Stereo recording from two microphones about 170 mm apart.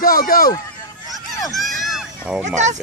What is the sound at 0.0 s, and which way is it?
Speech, 55° left (ahead or behind).